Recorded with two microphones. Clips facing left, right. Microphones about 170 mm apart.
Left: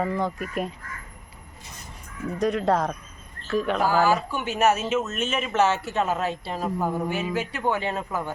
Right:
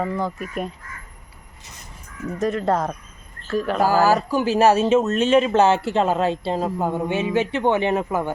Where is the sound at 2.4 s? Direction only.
Centre (ahead or behind).